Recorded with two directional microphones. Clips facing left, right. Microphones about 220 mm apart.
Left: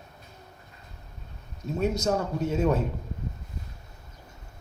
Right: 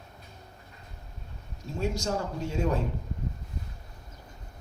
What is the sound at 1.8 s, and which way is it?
A man's voice, 20° left (ahead or behind).